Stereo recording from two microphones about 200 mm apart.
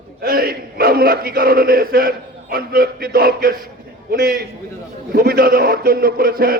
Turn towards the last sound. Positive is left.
turn(degrees=-50)  # may be behind; listen again after turning